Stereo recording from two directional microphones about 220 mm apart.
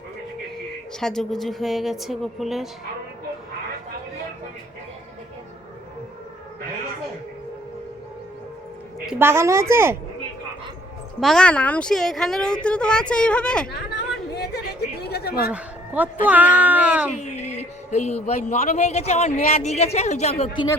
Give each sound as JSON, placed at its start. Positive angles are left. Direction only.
{"t": 0.9, "sound": "a woman's voice", "side_deg": 0}
{"t": 9.0, "sound": "a woman's voice", "side_deg": -10}
{"t": 11.2, "sound": "a woman's voice", "side_deg": 0}
{"t": 14.3, "sound": "a sound", "side_deg": 45}
{"t": 15.5, "sound": "a sound", "side_deg": -5}
{"t": 16.2, "sound": "a woman's voice", "side_deg": -5}
{"t": 17.2, "sound": "speech", "side_deg": 30}